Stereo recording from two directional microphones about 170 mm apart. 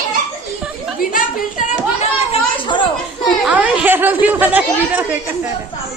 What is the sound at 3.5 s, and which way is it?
Chatter, 10° right (ahead or behind).